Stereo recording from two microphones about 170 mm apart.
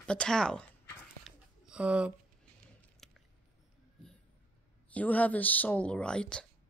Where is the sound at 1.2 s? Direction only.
5° right (ahead or behind).